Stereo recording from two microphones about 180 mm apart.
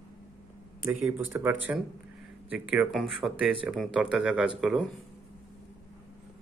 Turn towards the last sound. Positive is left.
turn(degrees=-5)  # may be behind; listen again after turning